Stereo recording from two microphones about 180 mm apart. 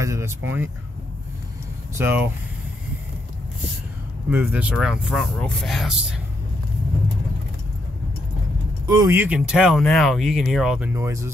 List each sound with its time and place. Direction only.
0.0 s speech: 15° right (ahead or behind)
2.0 s speech: 10° right (ahead or behind)
4.3 s speech: 10° right (ahead or behind)
8.8 s speech: 20° right (ahead or behind); by 10.9 s 5° right (ahead or behind)
10.9 s speech: 15° right (ahead or behind)